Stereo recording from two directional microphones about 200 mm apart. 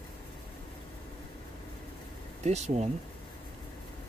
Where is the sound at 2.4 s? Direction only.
35° right (ahead or behind).